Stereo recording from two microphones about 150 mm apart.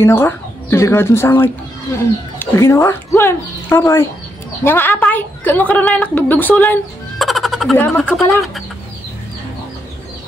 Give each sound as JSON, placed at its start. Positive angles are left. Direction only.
{"t": 0.0, "sound": "a woman's voice", "side_deg": 15}
{"t": 7.2, "sound": "music", "side_deg": 0}
{"t": 7.7, "sound": "a woman's voice", "side_deg": 15}
{"t": 8.1, "sound": "speech", "side_deg": 0}